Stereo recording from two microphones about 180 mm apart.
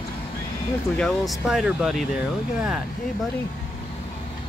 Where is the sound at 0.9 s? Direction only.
5° left (ahead or behind).